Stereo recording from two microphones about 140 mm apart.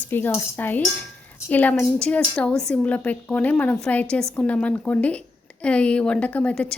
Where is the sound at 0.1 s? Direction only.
15° left (ahead or behind).